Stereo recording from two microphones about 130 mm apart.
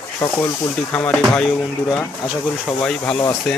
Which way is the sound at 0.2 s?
20° left (ahead or behind).